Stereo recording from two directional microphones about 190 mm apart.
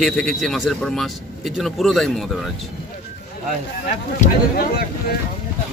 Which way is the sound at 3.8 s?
50° left (ahead or behind).